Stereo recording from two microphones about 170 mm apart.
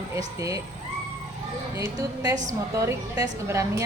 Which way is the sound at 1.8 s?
20° right (ahead or behind).